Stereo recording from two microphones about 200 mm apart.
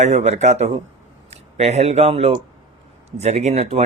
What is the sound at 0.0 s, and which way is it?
Speech, 35° right (ahead or behind).